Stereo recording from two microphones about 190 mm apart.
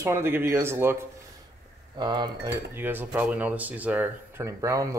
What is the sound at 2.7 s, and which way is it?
A man's voice, 10° right (ahead or behind).